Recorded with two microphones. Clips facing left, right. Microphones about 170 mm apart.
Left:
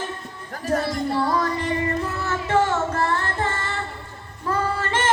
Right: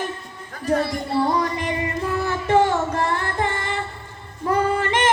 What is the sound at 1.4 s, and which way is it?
Female singing, 15° right (ahead or behind).